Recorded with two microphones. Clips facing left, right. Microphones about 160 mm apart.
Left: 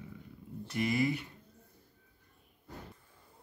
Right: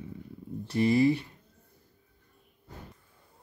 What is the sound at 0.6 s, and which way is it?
Speech, 30° right (ahead or behind).